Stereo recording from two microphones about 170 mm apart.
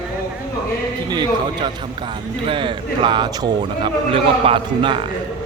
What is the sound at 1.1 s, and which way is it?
A man's voice, 25° right (ahead or behind).